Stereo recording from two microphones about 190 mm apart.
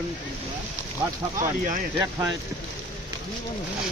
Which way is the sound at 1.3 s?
45° right (ahead or behind).